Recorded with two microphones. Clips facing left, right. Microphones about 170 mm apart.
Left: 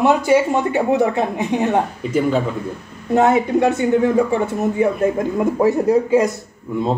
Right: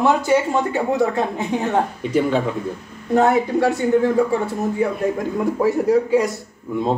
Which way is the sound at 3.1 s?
20° left (ahead or behind).